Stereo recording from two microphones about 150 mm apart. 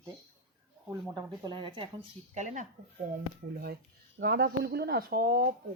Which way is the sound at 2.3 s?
55° right (ahead or behind).